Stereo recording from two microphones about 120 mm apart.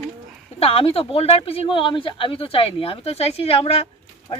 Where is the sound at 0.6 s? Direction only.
50° left (ahead or behind).